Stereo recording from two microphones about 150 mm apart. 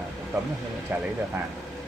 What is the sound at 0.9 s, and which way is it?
Speech, 10° right (ahead or behind).